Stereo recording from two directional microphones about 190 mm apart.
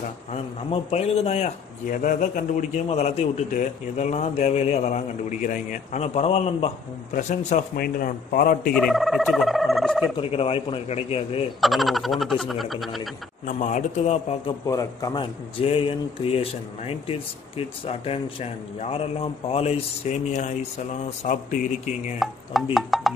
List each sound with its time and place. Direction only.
0.3 s a man's voice: 35° left (ahead or behind); by 8.7 s 50° left (ahead or behind)
8.7 s speech: centre (ahead or behind)
10.1 s a man's voice: 30° left (ahead or behind)
11.6 s frog: centre (ahead or behind)
13.5 s a man's voice: 40° left (ahead or behind)
14.7 s a man's voice: 20° left (ahead or behind); by 22.1 s 40° left (ahead or behind)
22.2 s frog: centre (ahead or behind)